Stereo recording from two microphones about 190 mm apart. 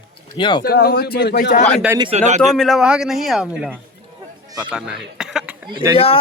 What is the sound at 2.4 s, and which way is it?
A man's voice, centre (ahead or behind).